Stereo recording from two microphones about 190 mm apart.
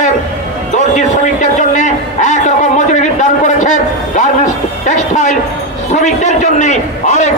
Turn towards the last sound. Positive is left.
turn(degrees=40)  # may be behind; listen again after turning